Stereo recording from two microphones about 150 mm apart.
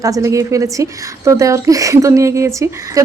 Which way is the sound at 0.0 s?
20° right (ahead or behind).